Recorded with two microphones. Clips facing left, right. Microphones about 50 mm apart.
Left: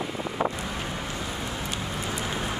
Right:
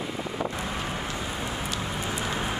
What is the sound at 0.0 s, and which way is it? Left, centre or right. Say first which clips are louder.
Wind: left 1 dB; centre.